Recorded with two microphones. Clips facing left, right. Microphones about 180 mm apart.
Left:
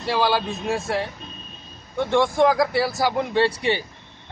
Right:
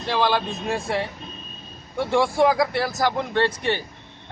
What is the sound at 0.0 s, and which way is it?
A man's voice, 5° left (ahead or behind).